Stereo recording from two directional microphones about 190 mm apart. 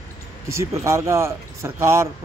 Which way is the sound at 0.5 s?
15° right (ahead or behind).